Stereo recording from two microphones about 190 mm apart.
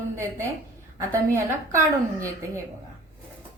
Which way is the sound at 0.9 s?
15° right (ahead or behind).